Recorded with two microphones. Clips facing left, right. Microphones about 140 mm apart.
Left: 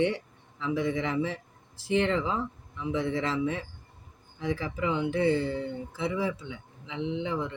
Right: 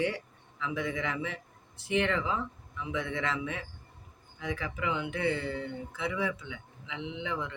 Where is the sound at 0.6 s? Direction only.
30° left (ahead or behind).